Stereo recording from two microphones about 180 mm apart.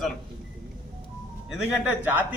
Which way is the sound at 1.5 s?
5° right (ahead or behind).